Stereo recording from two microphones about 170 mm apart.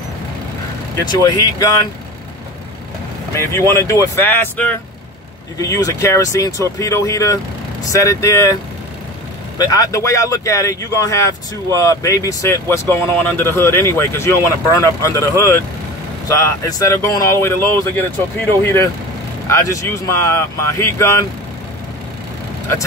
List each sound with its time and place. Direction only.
1.2 s speech: 20° left (ahead or behind)
3.3 s speech: 15° left (ahead or behind)
9.6 s speech: 20° left (ahead or behind)